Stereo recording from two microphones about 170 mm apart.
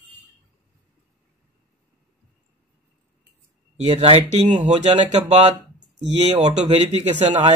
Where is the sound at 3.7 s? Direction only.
40° right (ahead or behind).